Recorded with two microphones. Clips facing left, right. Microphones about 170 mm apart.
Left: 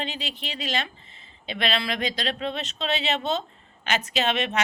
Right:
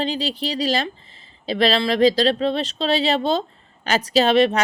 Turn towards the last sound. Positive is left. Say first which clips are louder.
# right 10 dB
turn(degrees=-35)  # may be behind; listen again after turning